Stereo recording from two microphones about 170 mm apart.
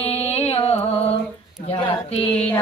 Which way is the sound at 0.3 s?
35° left (ahead or behind).